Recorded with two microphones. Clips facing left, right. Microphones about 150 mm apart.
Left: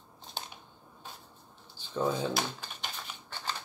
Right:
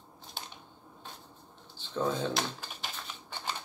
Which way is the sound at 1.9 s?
5° left (ahead or behind).